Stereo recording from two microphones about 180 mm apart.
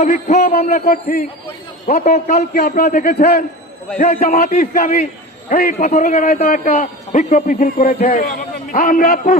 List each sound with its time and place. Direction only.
0.0 s a man's voice: 40° left (ahead or behind)
0.5 s a man's voice: 55° left (ahead or behind)
2.3 s a man's voice: 60° left (ahead or behind)
3.9 s a man's voice: 35° left (ahead or behind)